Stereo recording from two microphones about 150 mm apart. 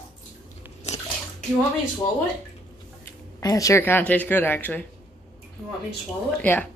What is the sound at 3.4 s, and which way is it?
Speech, 25° left (ahead or behind).